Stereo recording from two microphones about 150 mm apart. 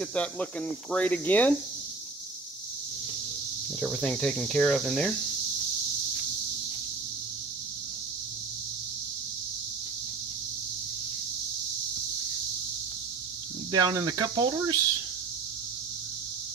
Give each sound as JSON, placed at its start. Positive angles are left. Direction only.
{"t": 0.0, "sound": "speech", "side_deg": 5}
{"t": 3.8, "sound": "speech", "side_deg": 5}
{"t": 13.7, "sound": "speech", "side_deg": -25}